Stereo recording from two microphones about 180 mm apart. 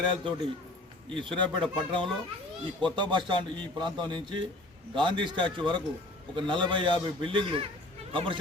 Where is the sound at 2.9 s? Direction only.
25° right (ahead or behind).